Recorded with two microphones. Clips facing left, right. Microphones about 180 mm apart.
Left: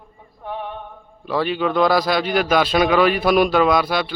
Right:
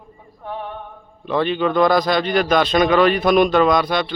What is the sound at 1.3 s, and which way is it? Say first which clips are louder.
A man's voice: right 2 dB; 5° left (ahead or behind).